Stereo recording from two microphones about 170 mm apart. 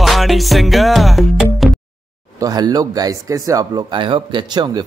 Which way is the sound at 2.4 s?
20° right (ahead or behind).